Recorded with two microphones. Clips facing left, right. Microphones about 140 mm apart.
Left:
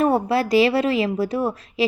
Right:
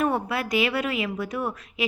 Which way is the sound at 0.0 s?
35° left (ahead or behind).